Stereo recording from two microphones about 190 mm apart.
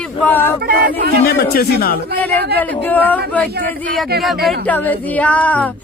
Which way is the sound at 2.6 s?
10° left (ahead or behind).